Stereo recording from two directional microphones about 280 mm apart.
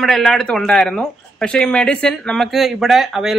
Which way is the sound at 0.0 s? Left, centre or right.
Centre.